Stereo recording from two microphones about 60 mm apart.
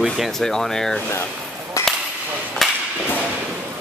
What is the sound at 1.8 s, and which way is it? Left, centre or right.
Whip, left.